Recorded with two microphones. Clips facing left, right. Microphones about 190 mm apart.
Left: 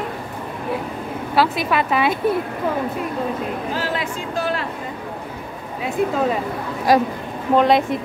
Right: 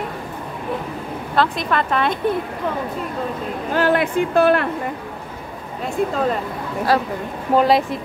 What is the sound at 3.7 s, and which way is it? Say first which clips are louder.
Speech: right 6 dB; 60° right (ahead or behind).